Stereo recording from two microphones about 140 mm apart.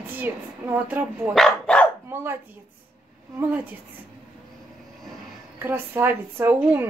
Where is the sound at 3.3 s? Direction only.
10° right (ahead or behind).